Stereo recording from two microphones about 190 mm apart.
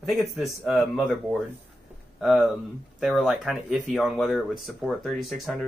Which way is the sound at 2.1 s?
Centre (ahead or behind).